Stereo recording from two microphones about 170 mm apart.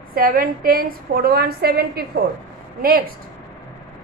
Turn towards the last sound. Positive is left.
turn(degrees=-60)  # may be behind; listen again after turning